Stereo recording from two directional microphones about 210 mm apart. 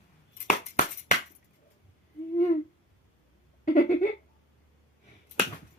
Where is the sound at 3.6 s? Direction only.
40° left (ahead or behind).